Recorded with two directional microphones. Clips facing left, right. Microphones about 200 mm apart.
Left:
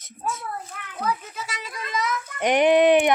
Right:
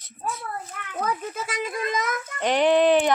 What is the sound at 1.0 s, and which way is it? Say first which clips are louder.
Speech: left 2 dB; 50° right (ahead or behind).